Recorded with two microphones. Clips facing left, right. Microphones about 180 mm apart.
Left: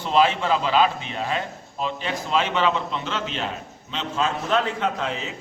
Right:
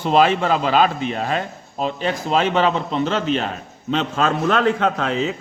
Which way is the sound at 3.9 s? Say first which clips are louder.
Right 6 dB; 65° right (ahead or behind).